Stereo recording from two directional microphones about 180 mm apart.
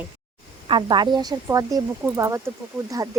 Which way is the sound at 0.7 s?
25° right (ahead or behind).